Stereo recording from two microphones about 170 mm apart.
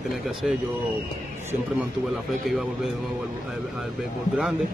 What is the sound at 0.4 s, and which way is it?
Speech, 5° right (ahead or behind).